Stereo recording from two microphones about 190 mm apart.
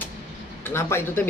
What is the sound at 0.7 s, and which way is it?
Speech, 15° left (ahead or behind).